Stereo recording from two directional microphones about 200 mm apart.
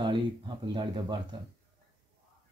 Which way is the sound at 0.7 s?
20° right (ahead or behind).